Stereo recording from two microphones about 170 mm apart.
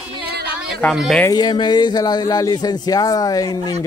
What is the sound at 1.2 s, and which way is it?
Speech, 25° left (ahead or behind).